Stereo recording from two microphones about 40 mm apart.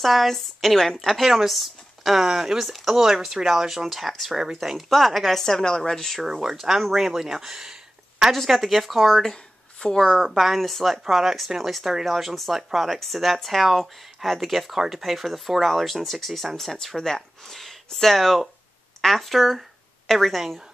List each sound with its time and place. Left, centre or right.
0.0 s speech: centre
6.2 s speech: centre
8.3 s speech: centre
10.2 s speech: centre